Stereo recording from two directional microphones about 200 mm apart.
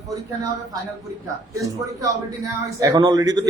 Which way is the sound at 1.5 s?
15° right (ahead or behind).